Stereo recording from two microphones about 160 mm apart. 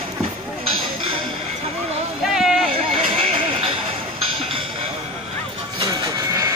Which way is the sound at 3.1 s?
35° right (ahead or behind).